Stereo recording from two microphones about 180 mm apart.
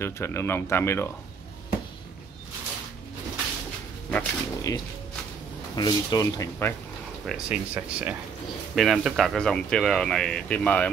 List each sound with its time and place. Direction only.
0.0 s speech: 15° left (ahead or behind)
4.1 s speech: 15° left (ahead or behind)
7.2 s speech: 5° right (ahead or behind)